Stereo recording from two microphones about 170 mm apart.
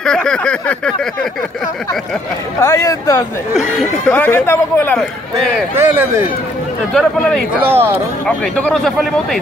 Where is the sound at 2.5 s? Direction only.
15° left (ahead or behind).